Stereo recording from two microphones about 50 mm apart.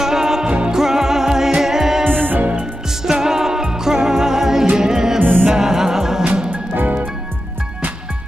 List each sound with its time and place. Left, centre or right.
0.0 s music: centre
2.0 s music: right
2.6 s music: centre
5.2 s music: right
5.5 s music: centre
6.5 s music: right